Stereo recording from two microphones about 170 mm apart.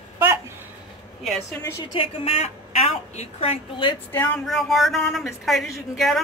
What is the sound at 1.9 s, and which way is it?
A woman's voice, 30° left (ahead or behind).